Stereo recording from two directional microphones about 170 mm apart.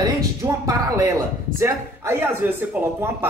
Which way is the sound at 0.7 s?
20° right (ahead or behind).